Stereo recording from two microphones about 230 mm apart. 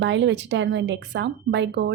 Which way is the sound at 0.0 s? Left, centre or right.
Right.